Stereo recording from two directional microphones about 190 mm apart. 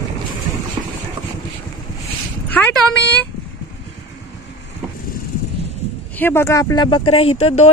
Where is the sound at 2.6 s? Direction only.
10° left (ahead or behind).